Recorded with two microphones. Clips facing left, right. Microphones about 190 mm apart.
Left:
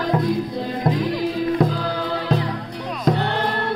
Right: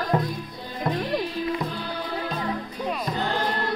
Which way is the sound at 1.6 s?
90° left.